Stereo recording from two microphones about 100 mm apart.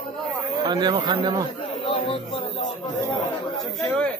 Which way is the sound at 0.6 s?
50° right (ahead or behind).